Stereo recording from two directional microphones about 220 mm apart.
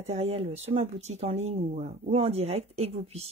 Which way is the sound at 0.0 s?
30° right (ahead or behind).